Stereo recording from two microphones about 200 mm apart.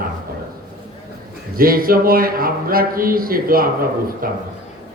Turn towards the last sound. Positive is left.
turn(degrees=-45)  # may be behind; listen again after turning